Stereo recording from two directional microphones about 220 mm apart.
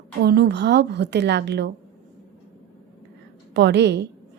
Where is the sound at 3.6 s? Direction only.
50° right (ahead or behind).